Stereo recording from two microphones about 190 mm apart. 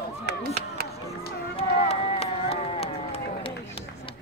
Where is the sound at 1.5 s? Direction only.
30° left (ahead or behind).